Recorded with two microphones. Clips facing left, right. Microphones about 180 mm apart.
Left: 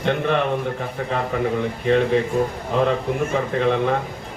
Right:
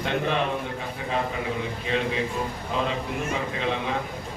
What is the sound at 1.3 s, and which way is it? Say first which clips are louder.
A man's voice: left 7 dB; 60° left (ahead or behind).